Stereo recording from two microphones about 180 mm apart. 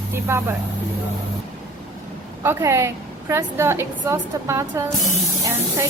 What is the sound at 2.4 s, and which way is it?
A woman's voice, 15° right (ahead or behind).